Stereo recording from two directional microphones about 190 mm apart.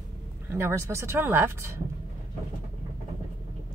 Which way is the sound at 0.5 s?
15° right (ahead or behind).